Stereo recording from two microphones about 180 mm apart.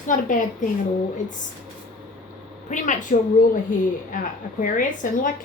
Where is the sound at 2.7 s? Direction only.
45° left (ahead or behind).